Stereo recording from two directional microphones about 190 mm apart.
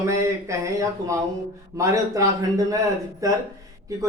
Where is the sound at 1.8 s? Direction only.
15° right (ahead or behind).